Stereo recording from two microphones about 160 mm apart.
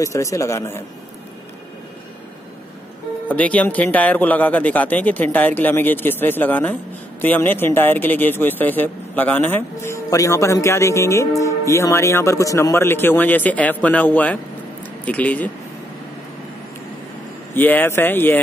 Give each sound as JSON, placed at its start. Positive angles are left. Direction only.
{"t": 0.0, "sound": "a man's voice", "side_deg": 20}
{"t": 3.3, "sound": "speech", "side_deg": 10}
{"t": 17.6, "sound": "speech", "side_deg": 10}